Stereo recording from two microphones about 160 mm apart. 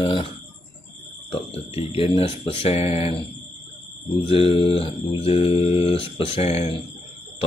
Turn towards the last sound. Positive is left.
turn(degrees=40)  # may be behind; listen again after turning